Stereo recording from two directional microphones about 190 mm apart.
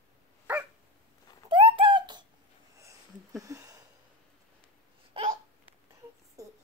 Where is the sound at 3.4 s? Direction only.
15° right (ahead or behind).